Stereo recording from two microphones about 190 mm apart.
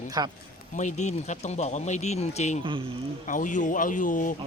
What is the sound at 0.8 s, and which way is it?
Speech, 40° left (ahead or behind).